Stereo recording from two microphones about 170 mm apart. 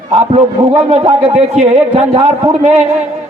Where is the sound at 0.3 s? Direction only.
35° right (ahead or behind).